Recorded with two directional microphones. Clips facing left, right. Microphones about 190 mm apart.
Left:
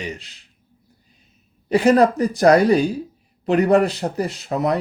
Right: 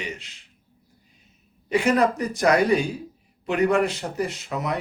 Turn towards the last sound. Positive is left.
turn(degrees=35)  # may be behind; listen again after turning